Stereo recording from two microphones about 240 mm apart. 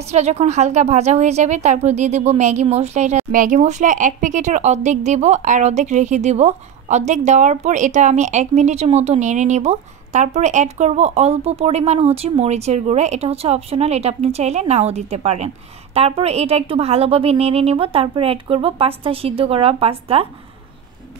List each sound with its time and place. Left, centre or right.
0.1 s a woman's voice: right